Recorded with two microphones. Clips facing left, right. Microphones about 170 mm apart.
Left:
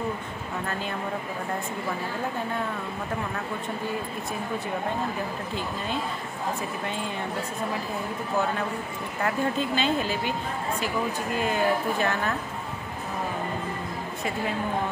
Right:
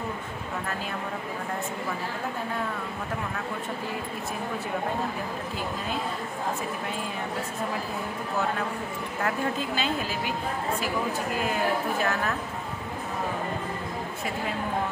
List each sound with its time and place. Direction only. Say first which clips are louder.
9.2 s speech: left 2 dB; 5° right (ahead or behind)
11.4 s speech: left 3 dB; centre (ahead or behind)